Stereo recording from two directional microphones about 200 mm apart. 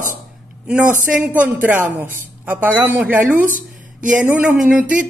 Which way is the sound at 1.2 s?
10° right (ahead or behind).